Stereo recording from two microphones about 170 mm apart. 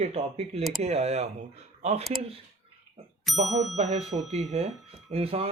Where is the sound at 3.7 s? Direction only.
40° right (ahead or behind).